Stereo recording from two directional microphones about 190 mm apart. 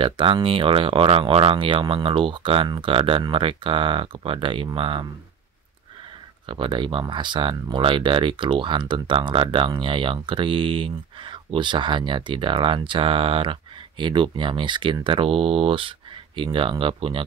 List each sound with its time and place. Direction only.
0.0 s speech: 25° right (ahead or behind)
6.4 s speech: 25° right (ahead or behind)